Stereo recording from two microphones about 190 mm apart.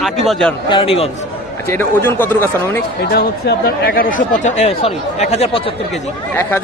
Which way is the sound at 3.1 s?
55° left (ahead or behind).